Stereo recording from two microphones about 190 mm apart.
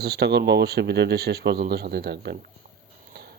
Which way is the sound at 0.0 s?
60° right (ahead or behind).